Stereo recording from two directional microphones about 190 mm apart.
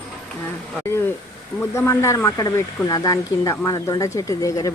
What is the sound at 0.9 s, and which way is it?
Speech, 15° left (ahead or behind).